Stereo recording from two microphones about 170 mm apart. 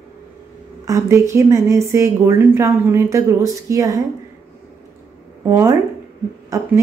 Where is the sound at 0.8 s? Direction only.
20° right (ahead or behind).